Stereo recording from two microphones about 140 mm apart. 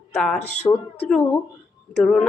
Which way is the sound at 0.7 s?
15° left (ahead or behind).